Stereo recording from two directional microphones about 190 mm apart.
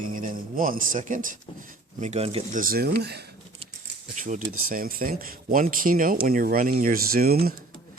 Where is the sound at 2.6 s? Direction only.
50° right (ahead or behind).